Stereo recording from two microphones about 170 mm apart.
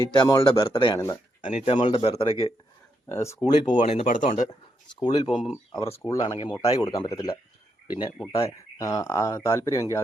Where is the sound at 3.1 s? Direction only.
15° left (ahead or behind).